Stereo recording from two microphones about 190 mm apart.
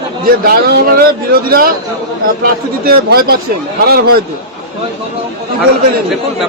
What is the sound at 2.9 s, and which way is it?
Speech, 55° right (ahead or behind).